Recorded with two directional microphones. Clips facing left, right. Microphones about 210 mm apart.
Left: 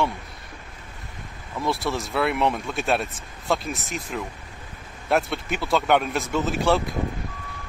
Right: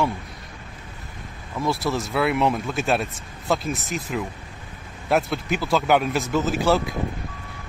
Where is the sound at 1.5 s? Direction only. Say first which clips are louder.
Right 2 dB; centre (ahead or behind).